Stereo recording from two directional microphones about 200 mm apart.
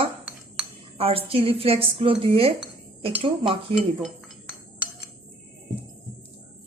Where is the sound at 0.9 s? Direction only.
30° right (ahead or behind).